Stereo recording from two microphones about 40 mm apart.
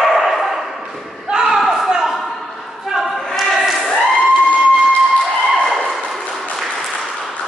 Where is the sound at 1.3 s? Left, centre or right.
Centre.